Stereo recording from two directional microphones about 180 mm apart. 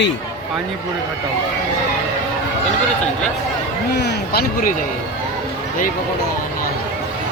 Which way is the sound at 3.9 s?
65° left (ahead or behind).